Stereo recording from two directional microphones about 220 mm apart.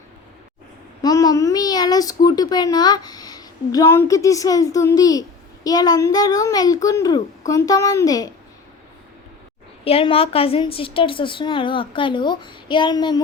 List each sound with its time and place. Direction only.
1.0 s a child's voice: 15° left (ahead or behind)
9.8 s a woman's voice: 25° left (ahead or behind)